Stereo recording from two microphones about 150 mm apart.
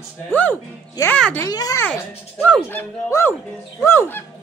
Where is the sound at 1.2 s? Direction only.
10° left (ahead or behind).